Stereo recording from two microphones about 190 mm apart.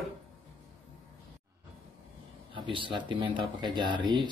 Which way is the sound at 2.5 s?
25° right (ahead or behind).